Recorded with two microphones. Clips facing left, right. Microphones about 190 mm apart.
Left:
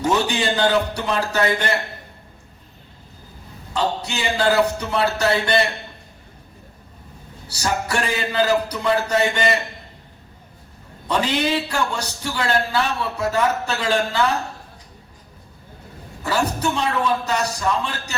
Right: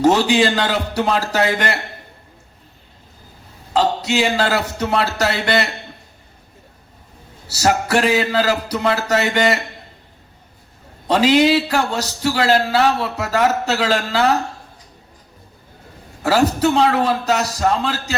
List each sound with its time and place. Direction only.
0.0 s a man's voice: 90° right
3.7 s a man's voice: 90° right
7.4 s a man's voice: 90° right
11.1 s a man's voice: 90° right
16.6 s a man's voice: 90° right